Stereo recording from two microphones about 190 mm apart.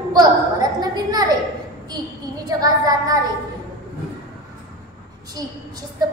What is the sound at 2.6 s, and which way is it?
Speech, 20° right (ahead or behind).